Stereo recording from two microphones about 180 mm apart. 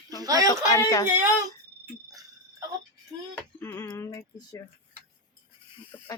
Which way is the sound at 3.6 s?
15° left (ahead or behind).